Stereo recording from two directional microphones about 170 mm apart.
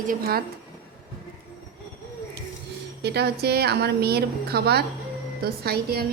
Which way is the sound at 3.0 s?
70° right (ahead or behind).